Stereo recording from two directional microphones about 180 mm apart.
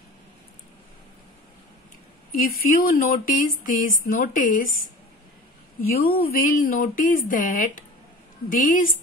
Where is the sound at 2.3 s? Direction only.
50° left (ahead or behind).